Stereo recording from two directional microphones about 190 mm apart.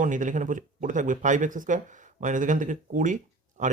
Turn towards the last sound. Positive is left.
turn(degrees=-40)  # may be behind; listen again after turning